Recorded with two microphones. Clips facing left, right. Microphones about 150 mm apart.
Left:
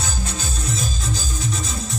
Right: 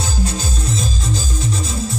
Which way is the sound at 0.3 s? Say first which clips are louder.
Right 4 dB; 30° right (ahead or behind).